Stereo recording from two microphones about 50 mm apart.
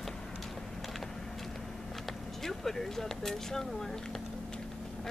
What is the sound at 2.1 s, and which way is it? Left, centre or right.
Speech, centre.